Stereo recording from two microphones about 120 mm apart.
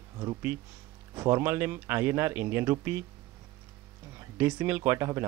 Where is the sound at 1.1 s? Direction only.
20° right (ahead or behind).